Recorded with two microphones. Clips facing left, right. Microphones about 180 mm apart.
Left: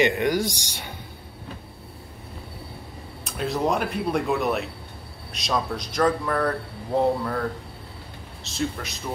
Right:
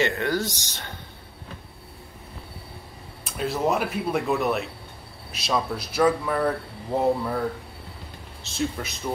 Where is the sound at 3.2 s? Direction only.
Centre (ahead or behind).